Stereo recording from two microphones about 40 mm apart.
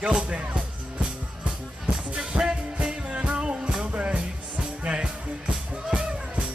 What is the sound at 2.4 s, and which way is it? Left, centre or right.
Music, right.